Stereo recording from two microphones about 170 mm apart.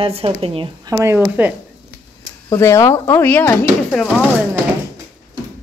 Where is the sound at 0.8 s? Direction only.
15° right (ahead or behind).